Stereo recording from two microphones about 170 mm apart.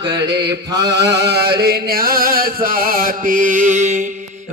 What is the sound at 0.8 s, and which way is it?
Chant, 75° right (ahead or behind).